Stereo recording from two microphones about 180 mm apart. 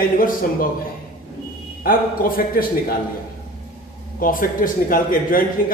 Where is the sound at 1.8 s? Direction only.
50° left (ahead or behind).